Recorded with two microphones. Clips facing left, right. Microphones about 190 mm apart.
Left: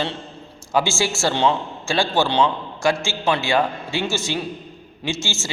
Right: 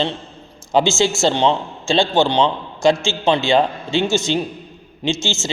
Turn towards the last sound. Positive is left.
turn(degrees=-20)  # may be behind; listen again after turning